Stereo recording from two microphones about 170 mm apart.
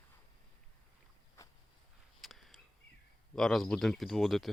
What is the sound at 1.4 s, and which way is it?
Walk, 15° left (ahead or behind).